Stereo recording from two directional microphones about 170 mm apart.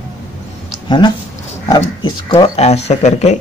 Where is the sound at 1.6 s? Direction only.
25° left (ahead or behind); by 3.4 s 40° left (ahead or behind).